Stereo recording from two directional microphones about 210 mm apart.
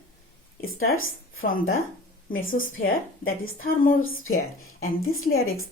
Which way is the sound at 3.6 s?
40° left (ahead or behind).